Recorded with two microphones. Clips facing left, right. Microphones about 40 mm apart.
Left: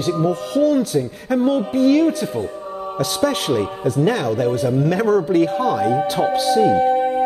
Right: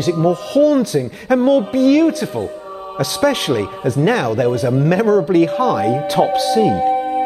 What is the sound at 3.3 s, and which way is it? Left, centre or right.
Speech, right.